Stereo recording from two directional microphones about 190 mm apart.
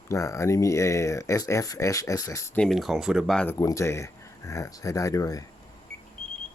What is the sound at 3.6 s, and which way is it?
Speech, 15° left (ahead or behind).